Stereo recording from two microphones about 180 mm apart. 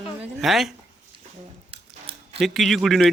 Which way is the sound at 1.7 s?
30° right (ahead or behind).